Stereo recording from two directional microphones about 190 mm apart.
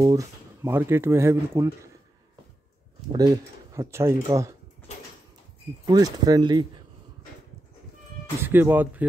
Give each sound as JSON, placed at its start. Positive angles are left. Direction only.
{"t": 0.0, "sound": "speech", "side_deg": -15}
{"t": 3.1, "sound": "speech", "side_deg": -20}
{"t": 5.9, "sound": "speech", "side_deg": -20}
{"t": 8.5, "sound": "speech", "side_deg": -10}